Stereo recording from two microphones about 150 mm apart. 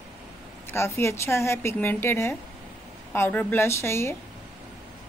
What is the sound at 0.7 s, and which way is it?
A woman's voice, 20° left (ahead or behind).